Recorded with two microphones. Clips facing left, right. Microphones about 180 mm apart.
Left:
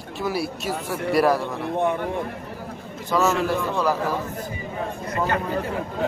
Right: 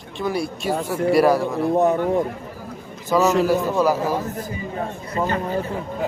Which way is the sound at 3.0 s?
15° right (ahead or behind).